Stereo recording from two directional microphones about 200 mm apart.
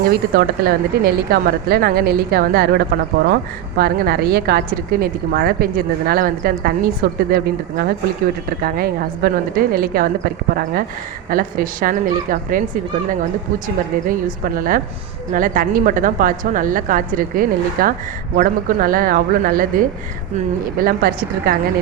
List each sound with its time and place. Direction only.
0.1 s a woman's voice: 50° right (ahead or behind)
14.1 s a woman's voice: 45° right (ahead or behind)